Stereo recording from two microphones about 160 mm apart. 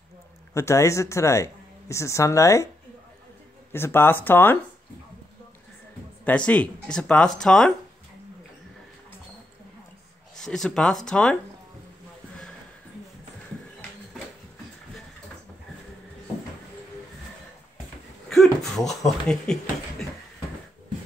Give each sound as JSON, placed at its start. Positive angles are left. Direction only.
{"t": 0.6, "sound": "speech", "side_deg": 20}
{"t": 3.7, "sound": "speech", "side_deg": 15}
{"t": 6.2, "sound": "speech", "side_deg": 10}
{"t": 10.3, "sound": "speech", "side_deg": 5}
{"t": 18.3, "sound": "speech", "side_deg": 0}